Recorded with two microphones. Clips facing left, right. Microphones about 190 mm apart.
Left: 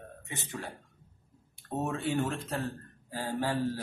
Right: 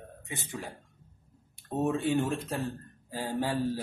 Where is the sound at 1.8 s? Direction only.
15° right (ahead or behind).